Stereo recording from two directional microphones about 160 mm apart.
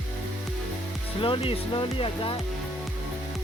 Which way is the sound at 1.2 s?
35° left (ahead or behind).